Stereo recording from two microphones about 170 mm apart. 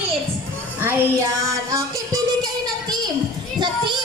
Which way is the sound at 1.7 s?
20° right (ahead or behind).